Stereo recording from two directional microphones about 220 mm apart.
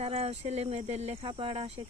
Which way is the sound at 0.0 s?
25° right (ahead or behind).